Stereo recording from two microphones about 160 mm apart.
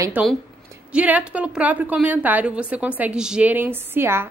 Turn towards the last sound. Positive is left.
turn(degrees=-15)  # may be behind; listen again after turning